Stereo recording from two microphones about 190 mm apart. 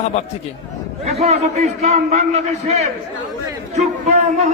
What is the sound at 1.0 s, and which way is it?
A man's voice, 35° right (ahead or behind).